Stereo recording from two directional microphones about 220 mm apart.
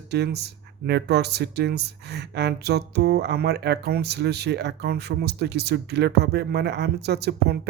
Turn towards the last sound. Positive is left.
turn(degrees=-45)  # may be behind; listen again after turning